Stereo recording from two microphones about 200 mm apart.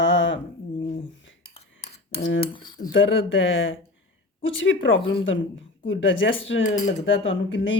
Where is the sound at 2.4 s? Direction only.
25° left (ahead or behind).